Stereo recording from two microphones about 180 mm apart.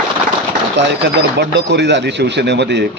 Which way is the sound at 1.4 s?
70° right (ahead or behind).